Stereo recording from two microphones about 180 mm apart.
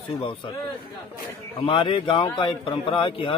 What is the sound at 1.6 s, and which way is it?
A man's voice, 30° left (ahead or behind).